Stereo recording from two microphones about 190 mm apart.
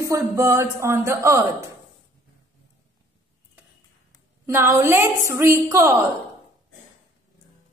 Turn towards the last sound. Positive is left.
turn(degrees=-15)  # may be behind; listen again after turning